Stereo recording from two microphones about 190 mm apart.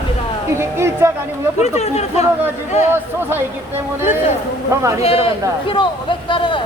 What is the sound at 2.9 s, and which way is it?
Speech, 10° right (ahead or behind).